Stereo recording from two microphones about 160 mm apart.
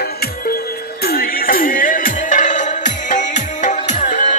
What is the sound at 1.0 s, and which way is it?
Music, 65° left (ahead or behind).